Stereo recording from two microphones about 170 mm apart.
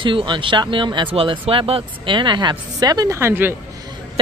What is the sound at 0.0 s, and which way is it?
Speech, 30° right (ahead or behind).